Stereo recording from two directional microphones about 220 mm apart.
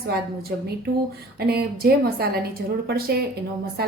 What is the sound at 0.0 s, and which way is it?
A woman's voice, 45° right (ahead or behind).